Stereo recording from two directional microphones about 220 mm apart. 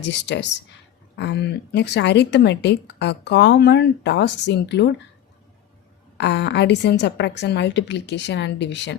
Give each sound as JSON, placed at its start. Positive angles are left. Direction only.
{"t": 0.1, "sound": "speech", "side_deg": 50}
{"t": 6.1, "sound": "speech", "side_deg": 50}